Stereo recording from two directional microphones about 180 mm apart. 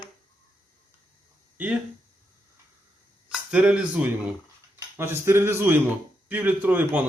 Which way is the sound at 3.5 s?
5° right (ahead or behind).